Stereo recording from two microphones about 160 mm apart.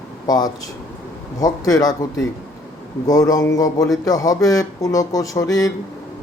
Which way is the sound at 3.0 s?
20° left (ahead or behind).